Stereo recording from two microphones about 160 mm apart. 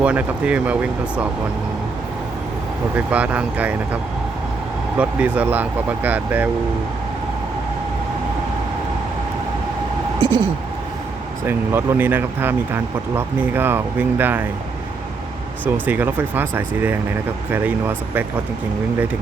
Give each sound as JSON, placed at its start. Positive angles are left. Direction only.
{"t": 0.0, "sound": "speech", "side_deg": -10}
{"t": 2.9, "sound": "speech", "side_deg": -10}
{"t": 4.9, "sound": "speech", "side_deg": -10}
{"t": 10.2, "sound": "a sound", "side_deg": -35}
{"t": 11.4, "sound": "speech", "side_deg": -15}
{"t": 15.6, "sound": "speech", "side_deg": -10}